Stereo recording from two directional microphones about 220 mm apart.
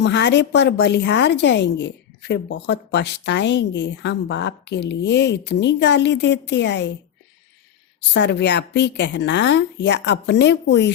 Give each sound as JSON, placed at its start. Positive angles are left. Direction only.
{"t": 0.0, "sound": "a woman's voice", "side_deg": 50}
{"t": 8.1, "sound": "a woman's voice", "side_deg": 50}